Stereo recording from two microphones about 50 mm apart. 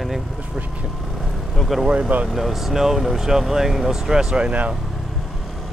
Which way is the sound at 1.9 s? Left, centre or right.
Right.